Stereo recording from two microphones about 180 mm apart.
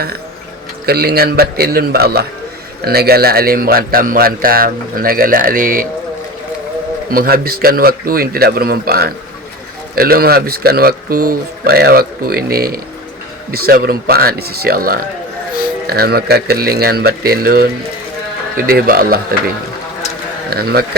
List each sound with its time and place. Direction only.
0.9 s speech: 60° right (ahead or behind)
7.1 s speech: 55° right (ahead or behind)
20.5 s speech: 60° right (ahead or behind)